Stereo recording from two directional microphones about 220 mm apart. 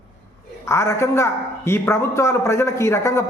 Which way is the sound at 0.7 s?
10° left (ahead or behind).